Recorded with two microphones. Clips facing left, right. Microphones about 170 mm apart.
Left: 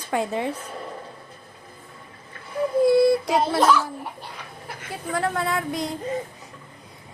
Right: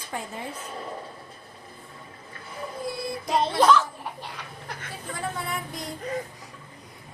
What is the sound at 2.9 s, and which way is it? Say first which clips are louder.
Child singing: left 17 dB; 70° left (ahead or behind).